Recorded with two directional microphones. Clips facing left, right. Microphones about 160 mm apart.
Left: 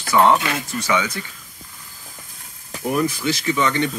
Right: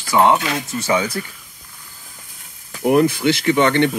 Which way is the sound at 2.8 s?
65° right (ahead or behind).